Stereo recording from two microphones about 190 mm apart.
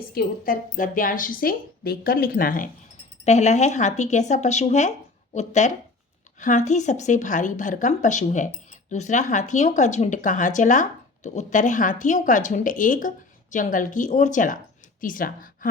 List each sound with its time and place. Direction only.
0.1 s a woman's voice: 50° left (ahead or behind)
3.2 s a woman's voice: 35° left (ahead or behind)